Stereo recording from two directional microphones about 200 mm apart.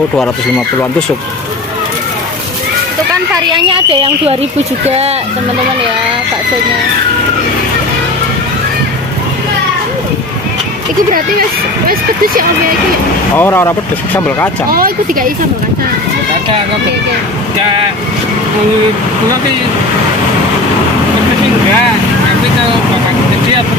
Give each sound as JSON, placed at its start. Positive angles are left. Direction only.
{"t": 3.5, "sound": "speech", "side_deg": -25}
{"t": 13.3, "sound": "speech", "side_deg": 10}
{"t": 14.7, "sound": "speech", "side_deg": -45}